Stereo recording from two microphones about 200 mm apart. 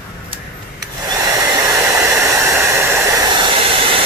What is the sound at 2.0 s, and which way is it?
Hair dryer, 15° right (ahead or behind).